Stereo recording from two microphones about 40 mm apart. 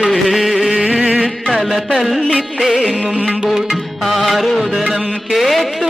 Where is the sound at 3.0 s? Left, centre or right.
Right.